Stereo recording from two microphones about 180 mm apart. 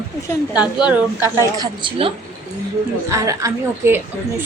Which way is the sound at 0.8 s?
10° right (ahead or behind).